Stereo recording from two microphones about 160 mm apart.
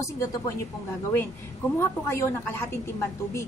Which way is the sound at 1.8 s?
15° left (ahead or behind).